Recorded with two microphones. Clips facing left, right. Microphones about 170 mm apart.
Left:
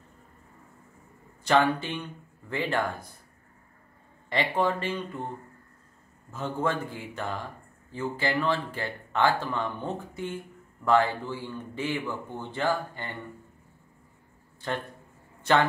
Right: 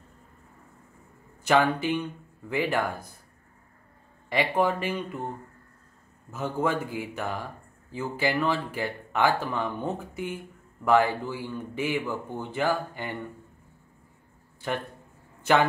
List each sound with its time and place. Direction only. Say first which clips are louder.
1.5 s speech: right 1 dB; 10° right (ahead or behind)
4.3 s speech: right 2 dB; 10° right (ahead or behind)
6.3 s speech: right 2 dB; 10° right (ahead or behind)